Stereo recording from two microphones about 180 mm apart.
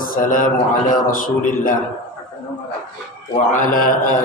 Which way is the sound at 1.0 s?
50° left (ahead or behind).